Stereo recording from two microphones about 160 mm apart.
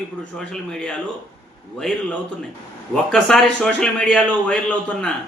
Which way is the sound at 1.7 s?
5° left (ahead or behind).